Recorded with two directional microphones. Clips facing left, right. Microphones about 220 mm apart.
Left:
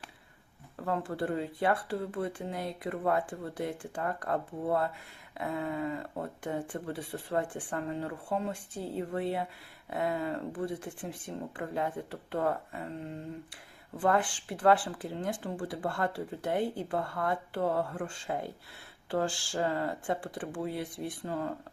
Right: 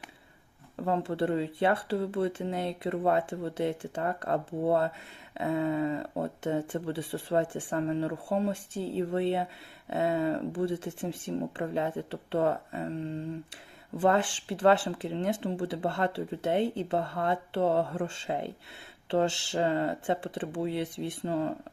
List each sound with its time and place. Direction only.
0.8 s speech: 25° right (ahead or behind)
14.0 s speech: 25° right (ahead or behind)